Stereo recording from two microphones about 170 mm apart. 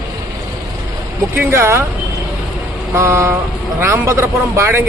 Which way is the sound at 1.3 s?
15° right (ahead or behind).